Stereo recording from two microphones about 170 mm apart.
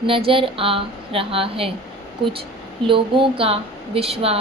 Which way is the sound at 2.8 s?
30° right (ahead or behind).